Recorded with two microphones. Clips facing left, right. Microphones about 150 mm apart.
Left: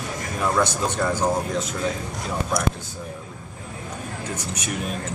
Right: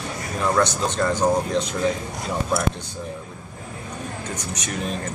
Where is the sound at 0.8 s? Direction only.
10° left (ahead or behind).